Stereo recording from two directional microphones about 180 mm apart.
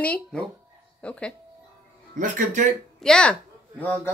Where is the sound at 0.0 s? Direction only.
5° left (ahead or behind).